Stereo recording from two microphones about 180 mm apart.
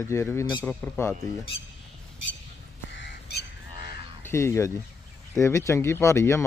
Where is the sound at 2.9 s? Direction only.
75° left (ahead or behind).